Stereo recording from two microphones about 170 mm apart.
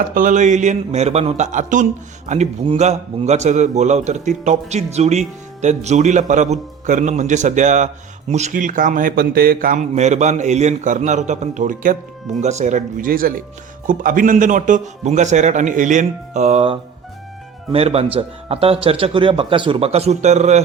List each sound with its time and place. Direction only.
0.1 s a man's voice: 50° right (ahead or behind)